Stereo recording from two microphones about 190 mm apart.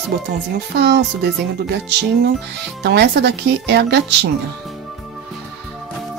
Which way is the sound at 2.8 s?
60° right (ahead or behind).